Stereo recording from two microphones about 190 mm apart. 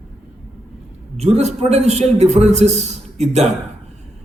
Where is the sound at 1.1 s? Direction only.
35° right (ahead or behind).